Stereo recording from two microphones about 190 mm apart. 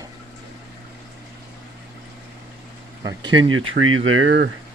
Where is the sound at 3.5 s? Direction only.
90° right.